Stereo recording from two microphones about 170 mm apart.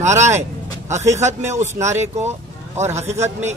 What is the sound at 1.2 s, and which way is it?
Speech, 15° right (ahead or behind).